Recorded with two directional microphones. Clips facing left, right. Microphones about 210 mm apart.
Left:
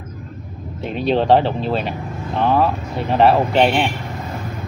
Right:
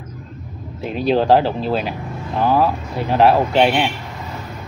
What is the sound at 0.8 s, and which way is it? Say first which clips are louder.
Speech: right 1 dB; centre (ahead or behind).